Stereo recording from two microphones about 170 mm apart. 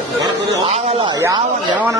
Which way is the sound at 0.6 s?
40° right (ahead or behind).